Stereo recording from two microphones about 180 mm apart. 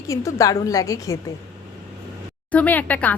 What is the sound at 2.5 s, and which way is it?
Speech, 10° left (ahead or behind).